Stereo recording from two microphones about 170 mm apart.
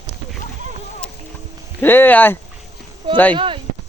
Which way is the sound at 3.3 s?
30° right (ahead or behind).